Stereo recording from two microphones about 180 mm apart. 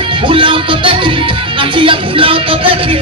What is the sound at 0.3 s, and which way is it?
Music, 30° right (ahead or behind).